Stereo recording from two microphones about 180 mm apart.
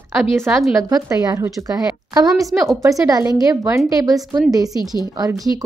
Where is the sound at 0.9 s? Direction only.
20° right (ahead or behind).